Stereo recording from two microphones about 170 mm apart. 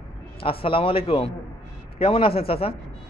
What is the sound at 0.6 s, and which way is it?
A man's voice, 30° left (ahead or behind).